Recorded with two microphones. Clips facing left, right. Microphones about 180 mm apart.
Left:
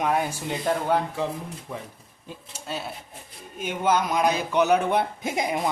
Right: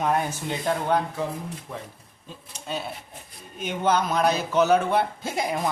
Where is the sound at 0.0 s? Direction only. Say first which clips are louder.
Even; 10° left (ahead or behind).